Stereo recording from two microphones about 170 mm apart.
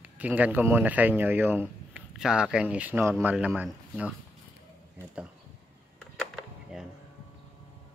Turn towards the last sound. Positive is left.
turn(degrees=-5)  # may be behind; listen again after turning